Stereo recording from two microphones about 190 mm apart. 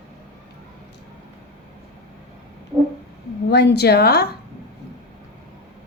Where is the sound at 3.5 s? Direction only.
60° left (ahead or behind).